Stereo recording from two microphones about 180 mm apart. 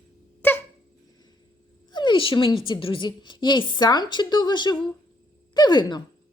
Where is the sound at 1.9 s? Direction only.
25° left (ahead or behind).